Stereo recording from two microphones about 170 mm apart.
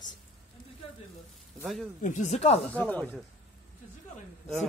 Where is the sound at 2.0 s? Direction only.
45° left (ahead or behind).